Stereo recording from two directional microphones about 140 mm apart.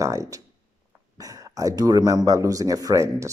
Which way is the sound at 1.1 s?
25° right (ahead or behind).